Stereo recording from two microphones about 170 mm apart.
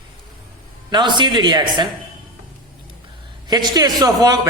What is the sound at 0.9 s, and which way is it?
A man's voice, 25° right (ahead or behind).